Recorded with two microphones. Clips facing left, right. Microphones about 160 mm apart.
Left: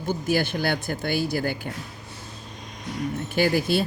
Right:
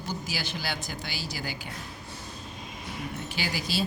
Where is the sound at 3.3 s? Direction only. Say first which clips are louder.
Left 10 dB; 55° left (ahead or behind).